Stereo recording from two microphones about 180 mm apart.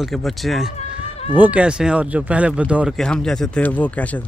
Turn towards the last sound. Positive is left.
turn(degrees=10)  # may be behind; listen again after turning